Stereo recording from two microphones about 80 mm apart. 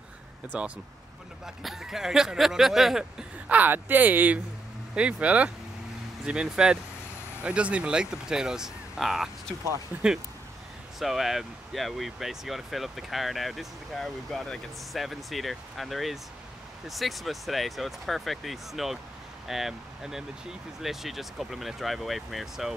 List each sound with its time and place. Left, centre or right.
0.5 s speech: centre
1.4 s speech: centre
3.5 s speech: right; by 9.3 s centre
11.0 s speech: centre